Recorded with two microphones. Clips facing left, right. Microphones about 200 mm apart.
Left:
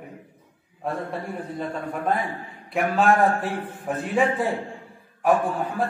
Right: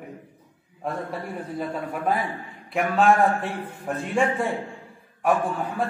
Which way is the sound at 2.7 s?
Centre (ahead or behind).